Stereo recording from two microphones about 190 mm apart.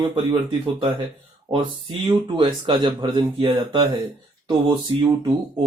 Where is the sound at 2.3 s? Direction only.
25° right (ahead or behind).